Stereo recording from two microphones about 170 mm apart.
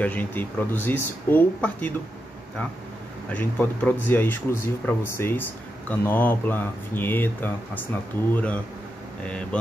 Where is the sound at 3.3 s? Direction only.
10° left (ahead or behind).